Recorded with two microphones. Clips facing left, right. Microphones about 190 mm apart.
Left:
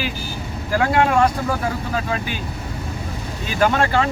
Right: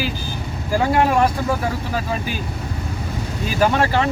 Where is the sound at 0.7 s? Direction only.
5° right (ahead or behind).